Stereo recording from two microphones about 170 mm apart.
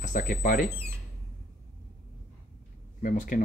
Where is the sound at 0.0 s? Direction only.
55° left (ahead or behind).